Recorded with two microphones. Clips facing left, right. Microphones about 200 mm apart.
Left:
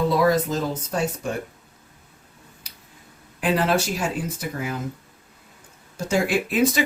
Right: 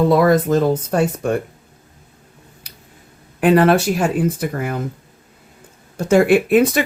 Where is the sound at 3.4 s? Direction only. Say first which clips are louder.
Right 9 dB; 60° right (ahead or behind).